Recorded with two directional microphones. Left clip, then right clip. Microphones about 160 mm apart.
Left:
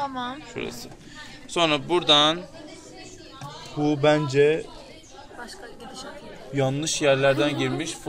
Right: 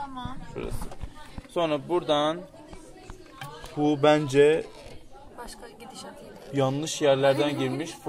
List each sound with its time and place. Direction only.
0.1 s speech: 55° left (ahead or behind)
1.5 s speech: 25° right (ahead or behind)
3.8 s speech: 45° right (ahead or behind)
6.5 s a man's voice: 20° right (ahead or behind)